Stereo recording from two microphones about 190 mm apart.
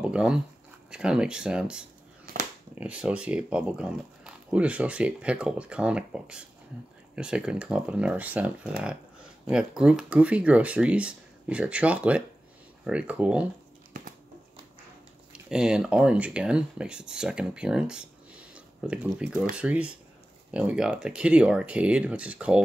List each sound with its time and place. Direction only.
0.0 s speech: 5° right (ahead or behind)
15.5 s speech: 5° right (ahead or behind)